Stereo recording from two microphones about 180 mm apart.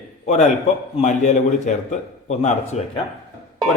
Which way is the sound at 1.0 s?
40° left (ahead or behind).